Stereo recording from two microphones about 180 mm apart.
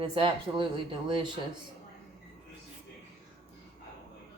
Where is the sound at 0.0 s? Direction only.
30° right (ahead or behind).